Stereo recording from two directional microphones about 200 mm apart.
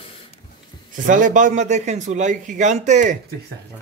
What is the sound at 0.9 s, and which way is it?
A man's voice, 40° right (ahead or behind).